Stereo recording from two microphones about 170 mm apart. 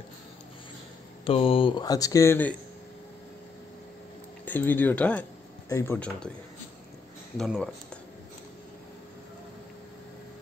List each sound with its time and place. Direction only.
1.2 s speech: 35° left (ahead or behind); by 2.5 s 15° left (ahead or behind)
4.5 s speech: 10° left (ahead or behind)
7.3 s speech: centre (ahead or behind)